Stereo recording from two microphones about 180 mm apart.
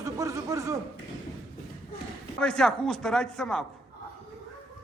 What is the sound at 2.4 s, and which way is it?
A man's voice, 5° left (ahead or behind).